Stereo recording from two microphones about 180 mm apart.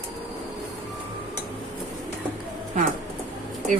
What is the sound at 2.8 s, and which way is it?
Speech, 40° right (ahead or behind).